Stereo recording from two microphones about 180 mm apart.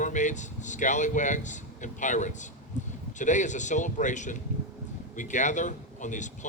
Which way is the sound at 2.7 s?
40° left (ahead or behind).